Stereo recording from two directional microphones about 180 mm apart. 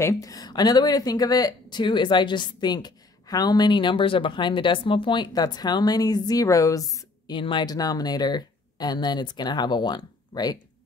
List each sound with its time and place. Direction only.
0.0 s speech: 20° left (ahead or behind)